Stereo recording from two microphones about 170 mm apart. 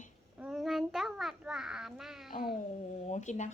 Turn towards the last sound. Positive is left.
turn(degrees=45)  # may be behind; listen again after turning